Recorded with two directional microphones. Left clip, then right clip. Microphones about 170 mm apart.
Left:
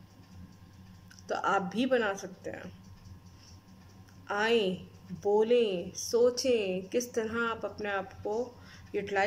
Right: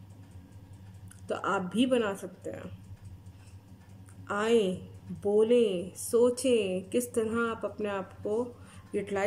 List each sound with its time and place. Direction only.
1.2 s a woman's voice: 25° right (ahead or behind)
4.3 s a woman's voice: 20° right (ahead or behind)